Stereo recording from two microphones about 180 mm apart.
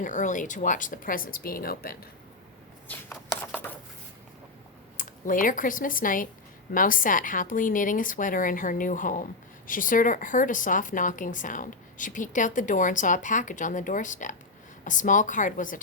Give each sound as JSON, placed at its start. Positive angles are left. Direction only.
{"t": 0.0, "sound": "speech", "side_deg": 45}
{"t": 2.9, "sound": "shuffling cards", "side_deg": 10}
{"t": 4.9, "sound": "speech", "side_deg": 45}